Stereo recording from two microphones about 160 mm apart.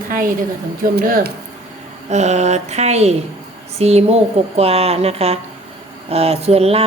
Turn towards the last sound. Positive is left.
turn(degrees=-40)  # may be behind; listen again after turning